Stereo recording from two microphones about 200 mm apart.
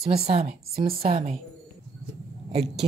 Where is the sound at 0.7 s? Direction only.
30° right (ahead or behind).